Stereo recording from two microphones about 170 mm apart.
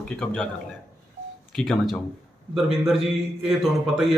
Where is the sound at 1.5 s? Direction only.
Centre (ahead or behind).